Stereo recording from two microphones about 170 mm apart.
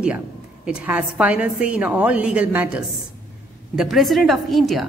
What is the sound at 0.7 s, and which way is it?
A woman's voice, 5° right (ahead or behind).